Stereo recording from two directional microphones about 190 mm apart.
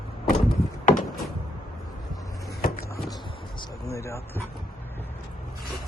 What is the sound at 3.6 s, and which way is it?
Speech, 15° left (ahead or behind).